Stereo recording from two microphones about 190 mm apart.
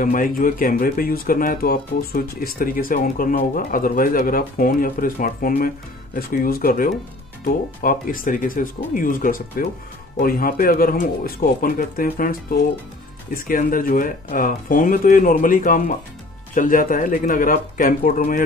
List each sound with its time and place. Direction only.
0.0 s speech: 45° left (ahead or behind)